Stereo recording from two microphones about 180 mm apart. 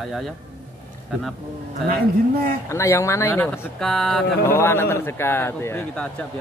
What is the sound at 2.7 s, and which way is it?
Speech, 15° left (ahead or behind).